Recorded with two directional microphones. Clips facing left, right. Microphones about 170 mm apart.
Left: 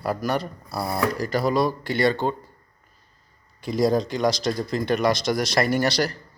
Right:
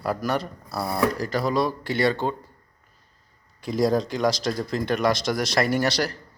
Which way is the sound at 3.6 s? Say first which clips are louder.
Left 1 dB; centre (ahead or behind).